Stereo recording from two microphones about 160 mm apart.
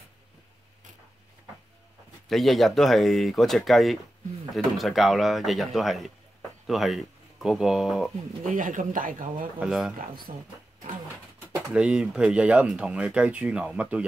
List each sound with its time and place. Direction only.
2.2 s speech: centre (ahead or behind)
8.5 s speech: 55° right (ahead or behind)
9.6 s speech: 5° right (ahead or behind)
10.3 s speech: 50° right (ahead or behind)
11.7 s speech: 5° right (ahead or behind)